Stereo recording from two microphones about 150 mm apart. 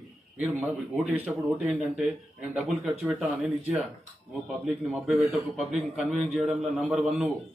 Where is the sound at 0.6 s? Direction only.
Centre (ahead or behind).